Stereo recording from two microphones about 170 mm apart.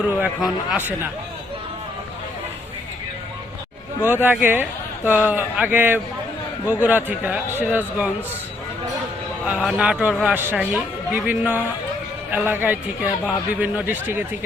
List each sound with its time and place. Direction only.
0.0 s a man's voice: 5° right (ahead or behind)
4.0 s a man's voice: 10° right (ahead or behind)
9.5 s a man's voice: 5° right (ahead or behind)